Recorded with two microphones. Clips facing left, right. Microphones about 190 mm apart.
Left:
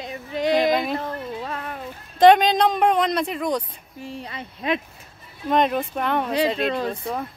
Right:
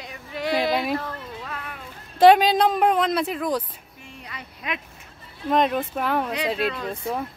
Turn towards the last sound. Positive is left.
turn(degrees=0)  # may be behind; listen again after turning